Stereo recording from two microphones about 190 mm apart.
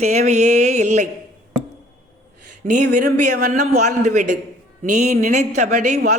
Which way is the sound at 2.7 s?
40° right (ahead or behind).